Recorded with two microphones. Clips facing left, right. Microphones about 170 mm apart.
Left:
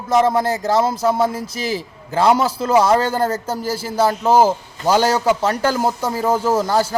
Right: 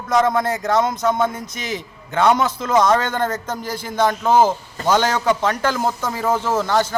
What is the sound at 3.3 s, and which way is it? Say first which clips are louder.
A man's voice: left 3 dB; 10° left (ahead or behind).